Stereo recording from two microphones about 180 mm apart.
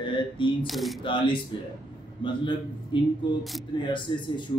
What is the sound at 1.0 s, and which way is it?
Speech, 25° left (ahead or behind).